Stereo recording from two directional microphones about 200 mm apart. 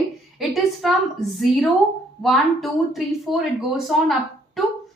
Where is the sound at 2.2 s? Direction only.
Centre (ahead or behind).